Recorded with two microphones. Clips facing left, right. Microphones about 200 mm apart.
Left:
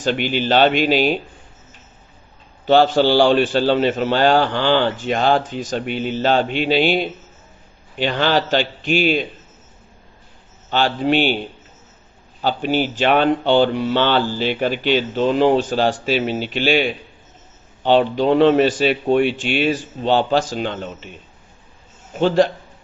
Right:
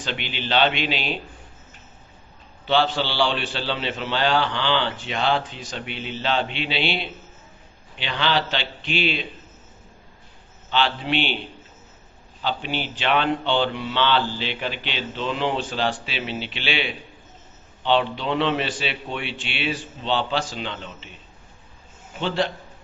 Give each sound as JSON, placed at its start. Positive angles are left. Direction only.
{"t": 0.0, "sound": "speech", "side_deg": 45}
{"t": 2.6, "sound": "speech", "side_deg": 45}
{"t": 10.7, "sound": "speech", "side_deg": 45}
{"t": 12.4, "sound": "speech", "side_deg": 45}